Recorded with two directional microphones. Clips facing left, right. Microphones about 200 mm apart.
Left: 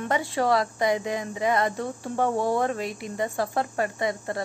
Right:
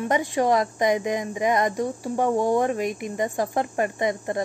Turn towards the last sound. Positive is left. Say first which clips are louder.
# right 3 dB
turn(degrees=-20)  # may be behind; listen again after turning